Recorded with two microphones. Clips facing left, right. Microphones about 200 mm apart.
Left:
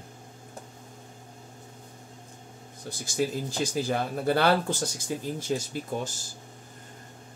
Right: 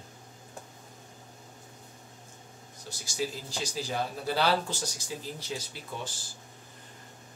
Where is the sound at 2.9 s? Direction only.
55° left (ahead or behind).